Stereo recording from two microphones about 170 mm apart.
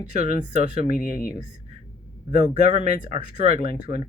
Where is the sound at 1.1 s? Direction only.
55° left (ahead or behind).